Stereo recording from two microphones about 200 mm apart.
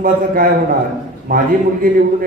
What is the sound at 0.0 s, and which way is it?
A man's voice, 45° right (ahead or behind).